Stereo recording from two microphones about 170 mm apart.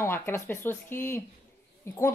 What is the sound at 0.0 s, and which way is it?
Speech, 15° left (ahead or behind).